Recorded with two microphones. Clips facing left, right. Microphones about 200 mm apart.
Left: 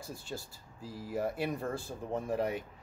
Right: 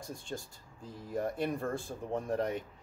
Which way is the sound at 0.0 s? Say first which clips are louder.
Right 1 dB; 5° left (ahead or behind).